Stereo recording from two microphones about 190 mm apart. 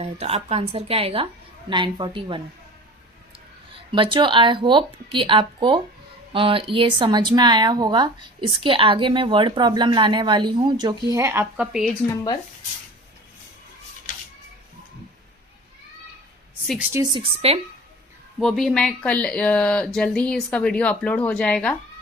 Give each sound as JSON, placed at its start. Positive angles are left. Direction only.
{"t": 0.0, "sound": "speech", "side_deg": -30}
{"t": 3.9, "sound": "speech", "side_deg": -25}
{"t": 16.9, "sound": "speech", "side_deg": -20}
{"t": 18.3, "sound": "speech", "side_deg": 0}